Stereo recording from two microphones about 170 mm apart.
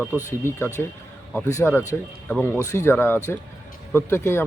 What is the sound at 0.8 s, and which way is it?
A man's voice, 10° left (ahead or behind).